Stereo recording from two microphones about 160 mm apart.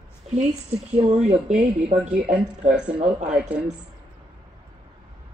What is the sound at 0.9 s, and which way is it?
Speech, 45° right (ahead or behind).